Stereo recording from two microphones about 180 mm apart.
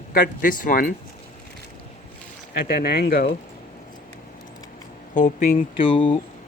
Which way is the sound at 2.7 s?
55° left (ahead or behind).